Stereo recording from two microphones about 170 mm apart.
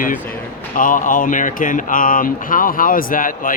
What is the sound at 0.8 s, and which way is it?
Speech, 50° left (ahead or behind).